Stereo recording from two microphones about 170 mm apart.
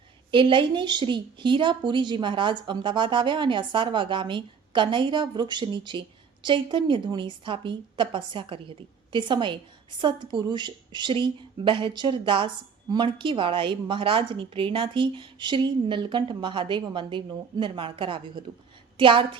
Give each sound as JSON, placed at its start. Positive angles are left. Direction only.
{"t": 0.3, "sound": "a woman's voice", "side_deg": -30}